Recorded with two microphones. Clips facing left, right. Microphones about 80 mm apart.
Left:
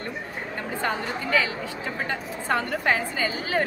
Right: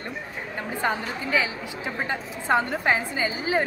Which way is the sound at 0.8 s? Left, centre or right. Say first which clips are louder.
Right 1 dB; centre.